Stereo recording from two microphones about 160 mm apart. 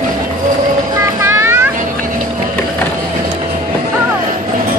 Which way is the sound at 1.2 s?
15° right (ahead or behind).